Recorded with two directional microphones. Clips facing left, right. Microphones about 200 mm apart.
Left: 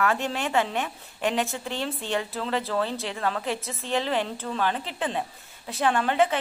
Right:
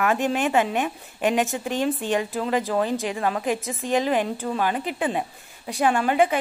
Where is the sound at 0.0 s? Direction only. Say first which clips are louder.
Right 4 dB; 15° right (ahead or behind).